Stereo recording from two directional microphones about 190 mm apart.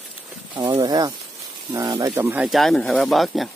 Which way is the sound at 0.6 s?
20° right (ahead or behind).